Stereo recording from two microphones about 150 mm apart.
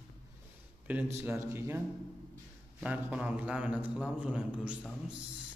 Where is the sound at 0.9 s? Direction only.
10° right (ahead or behind).